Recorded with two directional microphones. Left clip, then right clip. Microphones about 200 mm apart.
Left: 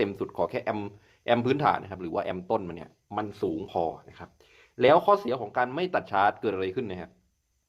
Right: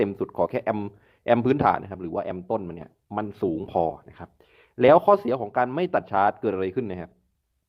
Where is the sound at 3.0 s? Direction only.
40° right (ahead or behind).